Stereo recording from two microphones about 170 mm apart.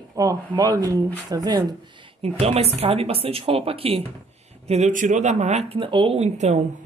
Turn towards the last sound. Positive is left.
turn(degrees=-40)  # may be behind; listen again after turning